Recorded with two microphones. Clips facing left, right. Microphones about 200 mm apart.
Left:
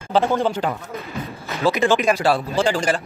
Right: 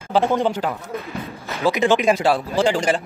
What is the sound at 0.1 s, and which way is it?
Speech, 15° right (ahead or behind).